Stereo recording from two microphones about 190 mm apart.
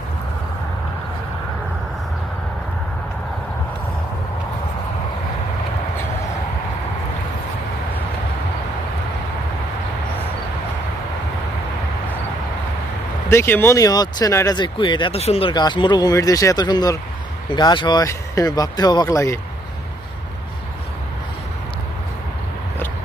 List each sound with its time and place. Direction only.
13.2 s speech: 15° left (ahead or behind)